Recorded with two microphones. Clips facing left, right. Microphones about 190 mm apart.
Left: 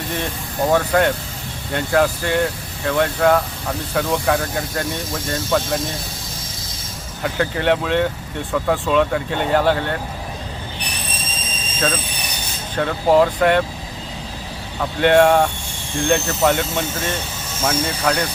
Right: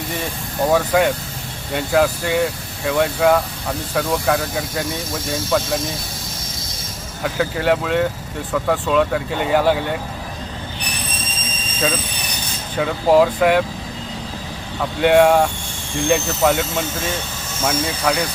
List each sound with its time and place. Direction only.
0.7 s speech: 5° right (ahead or behind)
7.2 s speech: centre (ahead or behind)
12.7 s speech: 5° right (ahead or behind)
14.8 s speech: 5° right (ahead or behind)